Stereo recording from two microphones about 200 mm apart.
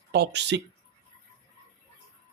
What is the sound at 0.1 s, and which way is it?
Speech, 55° right (ahead or behind).